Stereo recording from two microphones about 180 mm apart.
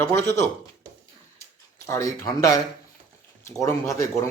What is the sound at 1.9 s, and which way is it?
Speech, 15° left (ahead or behind).